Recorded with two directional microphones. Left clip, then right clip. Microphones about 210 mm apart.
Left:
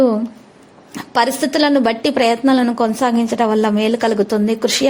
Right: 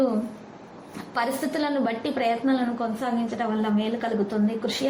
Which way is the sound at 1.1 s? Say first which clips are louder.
Left 11 dB; 45° left (ahead or behind).